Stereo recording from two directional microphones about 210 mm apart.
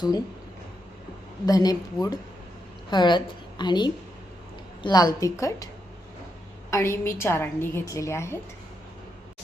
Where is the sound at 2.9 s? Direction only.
20° left (ahead or behind).